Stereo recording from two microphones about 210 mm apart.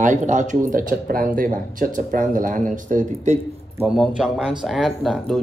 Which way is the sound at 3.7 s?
5° right (ahead or behind).